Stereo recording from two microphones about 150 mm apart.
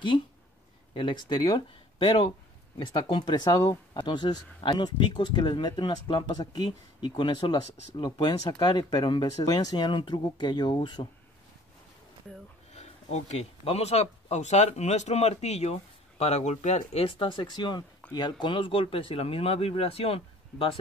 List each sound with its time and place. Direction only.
0.9 s speech: 35° left (ahead or behind)
12.7 s speech: 45° left (ahead or behind)